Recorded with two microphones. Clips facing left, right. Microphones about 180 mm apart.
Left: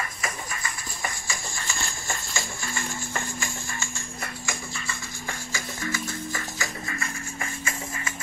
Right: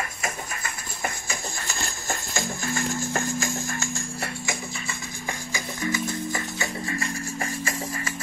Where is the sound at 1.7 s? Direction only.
40° right (ahead or behind).